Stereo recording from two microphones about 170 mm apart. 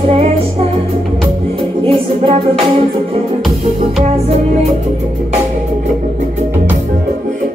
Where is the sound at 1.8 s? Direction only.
35° right (ahead or behind).